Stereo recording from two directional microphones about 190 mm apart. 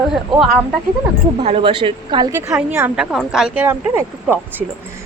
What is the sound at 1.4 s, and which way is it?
Speech, 30° right (ahead or behind).